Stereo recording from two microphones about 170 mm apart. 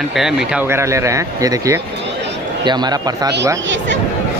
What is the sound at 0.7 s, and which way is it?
A man's voice, 15° right (ahead or behind).